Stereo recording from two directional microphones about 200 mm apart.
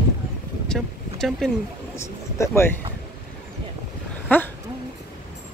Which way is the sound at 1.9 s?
15° left (ahead or behind).